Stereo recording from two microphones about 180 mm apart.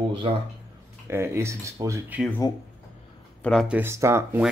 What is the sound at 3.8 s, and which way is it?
Speech, 15° right (ahead or behind).